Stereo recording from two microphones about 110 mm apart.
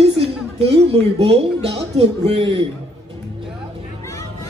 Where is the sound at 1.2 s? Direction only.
60° right (ahead or behind).